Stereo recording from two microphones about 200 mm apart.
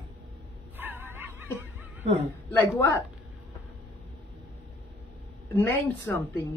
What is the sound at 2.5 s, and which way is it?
Speech, 10° left (ahead or behind).